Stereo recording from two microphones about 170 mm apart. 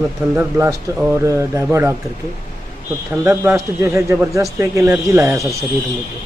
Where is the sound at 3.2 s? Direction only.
15° right (ahead or behind).